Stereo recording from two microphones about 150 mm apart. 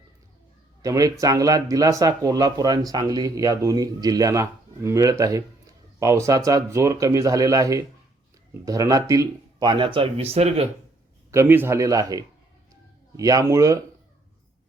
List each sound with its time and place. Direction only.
0.8 s speech: 25° right (ahead or behind); by 10.7 s 40° right (ahead or behind)
11.3 s speech: 15° right (ahead or behind)